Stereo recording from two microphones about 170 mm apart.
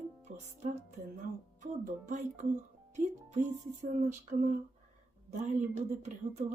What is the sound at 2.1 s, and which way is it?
Speech, 45° right (ahead or behind).